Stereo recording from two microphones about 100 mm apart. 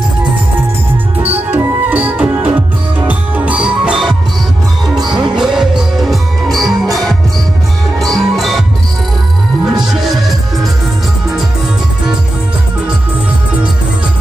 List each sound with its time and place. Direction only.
1.2 s music: 15° right (ahead or behind)
5.1 s music: 5° right (ahead or behind)